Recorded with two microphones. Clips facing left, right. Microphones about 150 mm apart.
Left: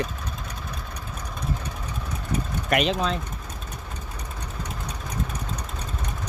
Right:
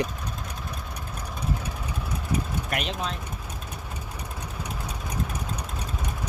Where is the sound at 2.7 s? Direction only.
90° left.